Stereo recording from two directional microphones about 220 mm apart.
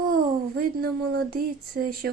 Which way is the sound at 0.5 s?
45° right (ahead or behind).